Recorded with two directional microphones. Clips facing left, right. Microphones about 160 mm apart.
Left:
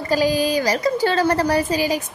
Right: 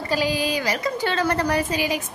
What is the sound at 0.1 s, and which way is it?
A woman's voice, 40° left (ahead or behind).